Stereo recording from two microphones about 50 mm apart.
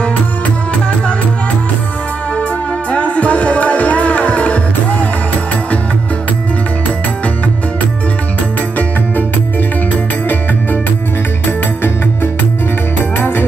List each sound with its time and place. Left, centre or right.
2.9 s music: left
13.2 s music: left